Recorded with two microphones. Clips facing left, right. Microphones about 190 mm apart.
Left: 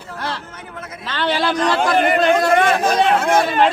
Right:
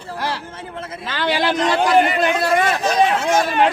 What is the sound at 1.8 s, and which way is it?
A man's voice, 50° left (ahead or behind).